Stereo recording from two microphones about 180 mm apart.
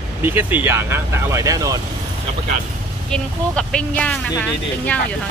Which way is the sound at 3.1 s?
5° left (ahead or behind).